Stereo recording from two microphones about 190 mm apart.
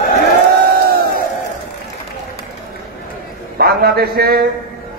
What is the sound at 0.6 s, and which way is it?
Crowd, 50° right (ahead or behind).